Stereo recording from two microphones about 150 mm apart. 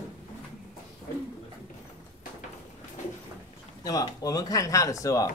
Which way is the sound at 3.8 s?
25° left (ahead or behind).